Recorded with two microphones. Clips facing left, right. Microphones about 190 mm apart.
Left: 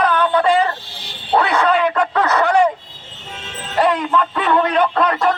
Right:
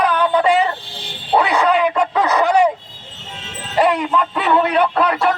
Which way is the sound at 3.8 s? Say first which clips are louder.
Right 1 dB; 10° right (ahead or behind).